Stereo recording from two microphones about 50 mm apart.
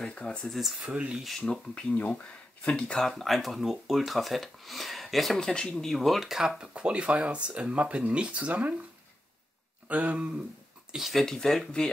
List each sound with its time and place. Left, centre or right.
0.1 s speech: left
0.5 s speech: centre
0.8 s speech: right
1.4 s speech: centre
1.8 s speech: left
2.7 s speech: centre
3.1 s speech: centre; by 8.7 s right
9.8 s speech: right
10.9 s speech: centre
11.2 s speech: centre